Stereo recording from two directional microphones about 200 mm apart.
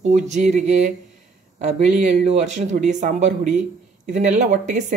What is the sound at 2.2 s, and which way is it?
Speech, 35° right (ahead or behind).